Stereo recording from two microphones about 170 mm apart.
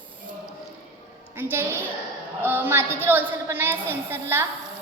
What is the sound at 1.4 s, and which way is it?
Speech, 15° right (ahead or behind).